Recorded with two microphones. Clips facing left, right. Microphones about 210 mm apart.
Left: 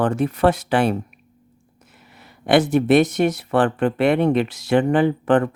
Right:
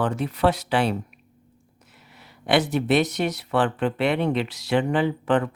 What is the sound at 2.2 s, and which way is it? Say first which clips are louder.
Speech: left 5 dB; 50° left (ahead or behind).